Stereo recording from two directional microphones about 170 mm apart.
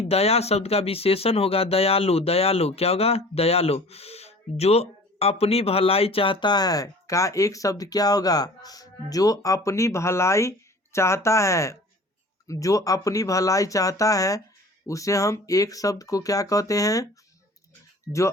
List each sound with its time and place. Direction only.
0.1 s speech: 35° left (ahead or behind); by 17.1 s 20° left (ahead or behind)